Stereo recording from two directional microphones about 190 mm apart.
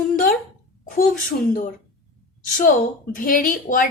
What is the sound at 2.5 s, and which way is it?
A woman's voice, 45° left (ahead or behind).